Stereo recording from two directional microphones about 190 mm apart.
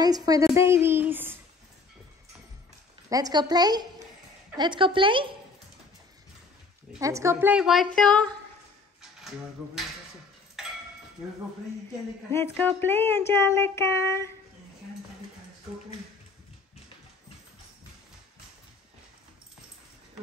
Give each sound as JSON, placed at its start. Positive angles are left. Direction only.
{"t": 0.0, "sound": "a woman's voice", "side_deg": -20}
{"t": 3.1, "sound": "a woman's voice", "side_deg": -20}
{"t": 7.0, "sound": "a woman's voice", "side_deg": -15}
{"t": 12.5, "sound": "a sound", "side_deg": 10}